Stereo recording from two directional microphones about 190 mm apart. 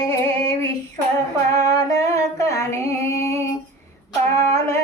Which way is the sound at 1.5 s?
20° left (ahead or behind).